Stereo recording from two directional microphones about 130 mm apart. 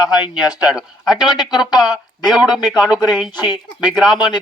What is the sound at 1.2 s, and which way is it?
Speech, 30° left (ahead or behind).